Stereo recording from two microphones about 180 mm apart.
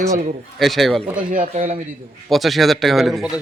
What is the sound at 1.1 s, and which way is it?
Speech, 50° right (ahead or behind).